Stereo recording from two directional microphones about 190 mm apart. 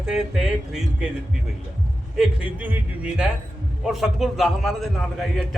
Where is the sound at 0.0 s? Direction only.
5° right (ahead or behind).